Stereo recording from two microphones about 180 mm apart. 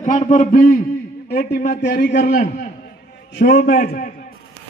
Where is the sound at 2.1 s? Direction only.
45° left (ahead or behind).